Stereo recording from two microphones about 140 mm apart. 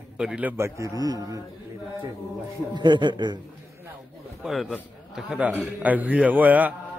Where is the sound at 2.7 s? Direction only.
35° right (ahead or behind).